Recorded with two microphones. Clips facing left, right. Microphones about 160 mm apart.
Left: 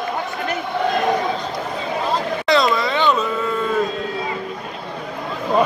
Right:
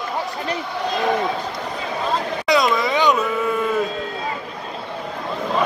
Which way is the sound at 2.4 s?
15° right (ahead or behind).